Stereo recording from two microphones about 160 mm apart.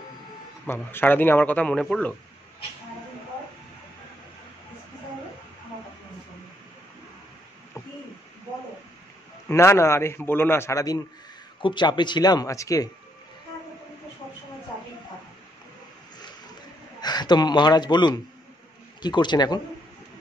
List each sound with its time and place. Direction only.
0.7 s speech: 15° left (ahead or behind)
9.5 s speech: 15° left (ahead or behind)
17.0 s a man's voice: 25° left (ahead or behind)